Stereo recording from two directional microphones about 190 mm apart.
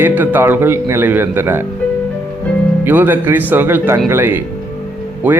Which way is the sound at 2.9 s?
10° right (ahead or behind).